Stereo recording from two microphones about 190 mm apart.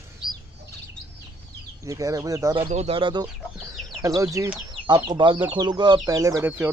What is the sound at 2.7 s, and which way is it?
Speech, 30° right (ahead or behind).